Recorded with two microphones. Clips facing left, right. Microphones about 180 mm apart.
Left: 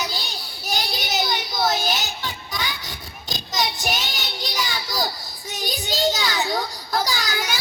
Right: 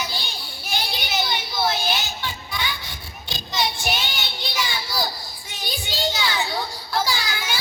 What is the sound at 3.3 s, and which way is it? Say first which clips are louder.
Child singing: even; 40° left (ahead or behind).